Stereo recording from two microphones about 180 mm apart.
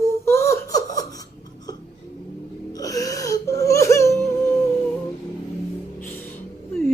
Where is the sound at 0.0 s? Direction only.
15° left (ahead or behind).